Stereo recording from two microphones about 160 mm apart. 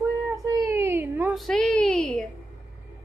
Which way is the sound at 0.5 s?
15° right (ahead or behind).